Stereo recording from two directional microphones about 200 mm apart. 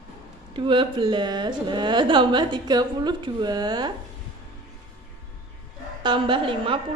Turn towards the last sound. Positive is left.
turn(degrees=-25)  # may be behind; listen again after turning